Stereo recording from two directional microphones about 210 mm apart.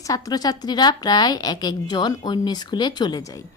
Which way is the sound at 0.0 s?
15° left (ahead or behind).